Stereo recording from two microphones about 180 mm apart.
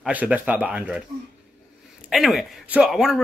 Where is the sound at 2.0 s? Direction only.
Centre (ahead or behind).